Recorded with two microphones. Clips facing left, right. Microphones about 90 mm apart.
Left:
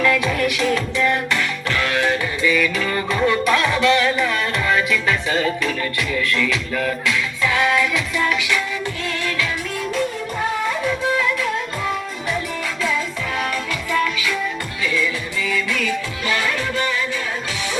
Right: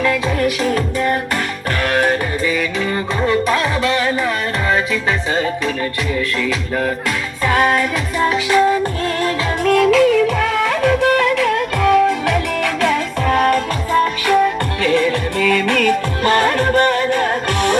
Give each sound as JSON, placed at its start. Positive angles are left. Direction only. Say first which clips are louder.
{"t": 0.0, "sound": "music", "louder": "right 2 dB", "side_deg": -30}
{"t": 7.4, "sound": "music", "louder": "right 4 dB", "side_deg": -45}
{"t": 9.6, "sound": "music of bollywood", "louder": "right 12 dB", "side_deg": -70}
{"t": 14.3, "sound": "music", "louder": "right 10 dB", "side_deg": -60}